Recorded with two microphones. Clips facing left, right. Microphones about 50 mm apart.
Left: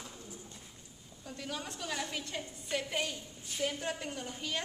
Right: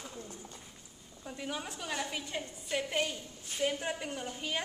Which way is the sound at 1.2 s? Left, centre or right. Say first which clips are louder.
Right 2 dB; centre.